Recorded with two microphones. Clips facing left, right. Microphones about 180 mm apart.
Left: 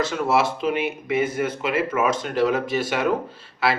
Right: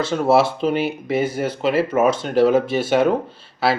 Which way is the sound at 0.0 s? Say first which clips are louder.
Right 5 dB; 30° right (ahead or behind).